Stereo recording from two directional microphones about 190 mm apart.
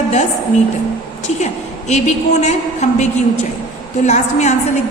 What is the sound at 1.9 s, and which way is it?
A woman's voice, 35° left (ahead or behind).